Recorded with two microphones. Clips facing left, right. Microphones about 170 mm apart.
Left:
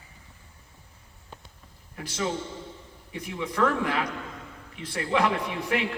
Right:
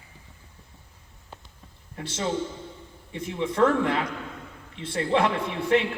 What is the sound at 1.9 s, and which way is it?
A man's voice, 30° right (ahead or behind).